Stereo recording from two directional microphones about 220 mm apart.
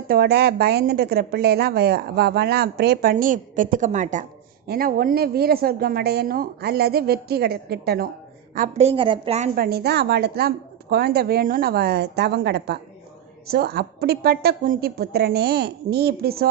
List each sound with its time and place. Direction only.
0.1 s a woman's voice: 45° right (ahead or behind)
8.5 s a woman's voice: 35° right (ahead or behind)
9.6 s a woman's voice: 45° right (ahead or behind)